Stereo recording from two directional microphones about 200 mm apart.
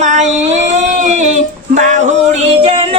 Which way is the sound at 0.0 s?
35° right (ahead or behind).